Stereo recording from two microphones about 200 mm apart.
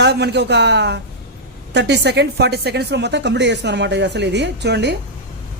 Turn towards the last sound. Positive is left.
turn(degrees=-60)  # may be behind; listen again after turning